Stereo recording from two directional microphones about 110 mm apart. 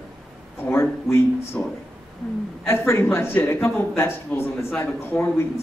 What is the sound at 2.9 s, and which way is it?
A man's voice, 25° left (ahead or behind).